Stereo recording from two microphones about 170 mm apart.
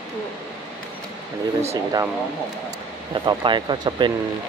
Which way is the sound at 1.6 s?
20° right (ahead or behind).